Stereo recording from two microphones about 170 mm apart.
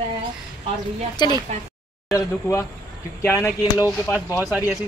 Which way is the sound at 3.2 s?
15° left (ahead or behind).